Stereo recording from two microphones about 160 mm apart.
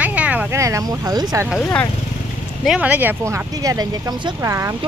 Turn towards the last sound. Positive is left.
turn(degrees=-20)  # may be behind; listen again after turning